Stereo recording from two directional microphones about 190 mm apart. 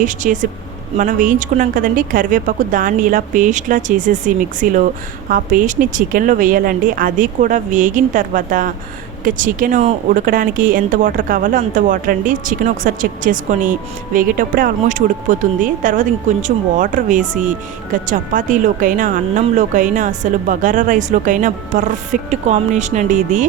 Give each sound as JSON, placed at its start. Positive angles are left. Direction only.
{"t": 0.0, "sound": "speech", "side_deg": -40}